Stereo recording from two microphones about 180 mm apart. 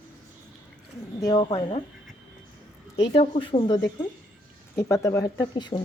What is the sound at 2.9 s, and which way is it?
Speech, 30° left (ahead or behind).